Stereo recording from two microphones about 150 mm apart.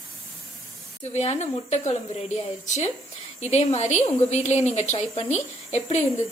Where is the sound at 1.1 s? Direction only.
50° left (ahead or behind).